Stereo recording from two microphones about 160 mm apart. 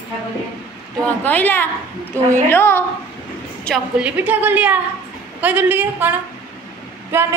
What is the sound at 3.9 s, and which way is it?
A woman's voice, 10° right (ahead or behind).